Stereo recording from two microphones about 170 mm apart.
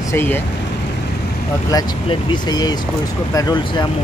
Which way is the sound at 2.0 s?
25° left (ahead or behind).